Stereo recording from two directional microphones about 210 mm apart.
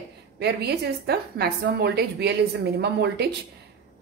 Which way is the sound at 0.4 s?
50° right (ahead or behind).